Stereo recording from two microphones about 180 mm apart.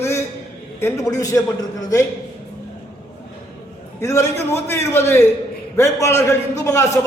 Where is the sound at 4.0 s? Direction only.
15° left (ahead or behind).